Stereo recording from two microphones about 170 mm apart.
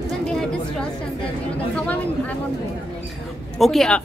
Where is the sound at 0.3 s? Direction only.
Centre (ahead or behind).